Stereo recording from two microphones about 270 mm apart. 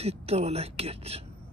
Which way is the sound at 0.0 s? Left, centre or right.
Right.